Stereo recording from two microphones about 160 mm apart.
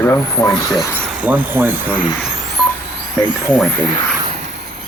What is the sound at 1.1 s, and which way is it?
Speech, 10° right (ahead or behind).